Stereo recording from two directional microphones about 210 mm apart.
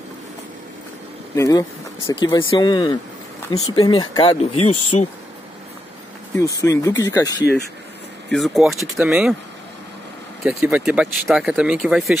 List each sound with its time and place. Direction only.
1.3 s speech: 15° left (ahead or behind)
6.6 s speech: 15° left (ahead or behind)
8.3 s speech: centre (ahead or behind)
10.4 s speech: 5° right (ahead or behind)